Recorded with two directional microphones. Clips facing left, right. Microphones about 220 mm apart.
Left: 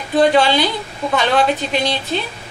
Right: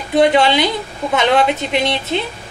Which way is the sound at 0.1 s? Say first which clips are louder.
Right 1 dB; 20° right (ahead or behind).